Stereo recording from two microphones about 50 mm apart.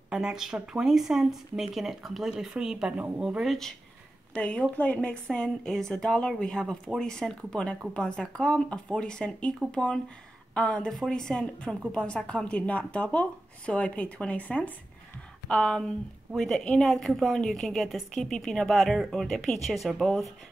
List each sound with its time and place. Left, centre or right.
0.1 s speech: centre
4.3 s speech: left
5.3 s speech: centre
15.4 s speech: centre